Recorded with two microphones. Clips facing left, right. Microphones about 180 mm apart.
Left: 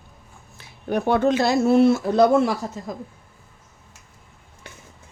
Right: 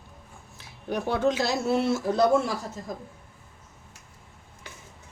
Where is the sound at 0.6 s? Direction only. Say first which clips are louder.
Left 6 dB; 60° left (ahead or behind).